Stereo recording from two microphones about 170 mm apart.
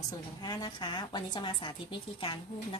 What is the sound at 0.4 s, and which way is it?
A woman's voice, 25° left (ahead or behind).